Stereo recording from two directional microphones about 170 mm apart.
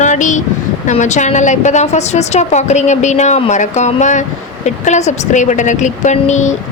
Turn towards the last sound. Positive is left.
turn(degrees=45)  # may be behind; listen again after turning